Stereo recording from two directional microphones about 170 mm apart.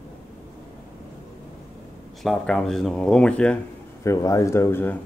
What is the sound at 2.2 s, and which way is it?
Speech, centre (ahead or behind).